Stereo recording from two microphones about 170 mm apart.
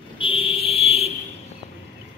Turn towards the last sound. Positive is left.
turn(degrees=35)  # may be behind; listen again after turning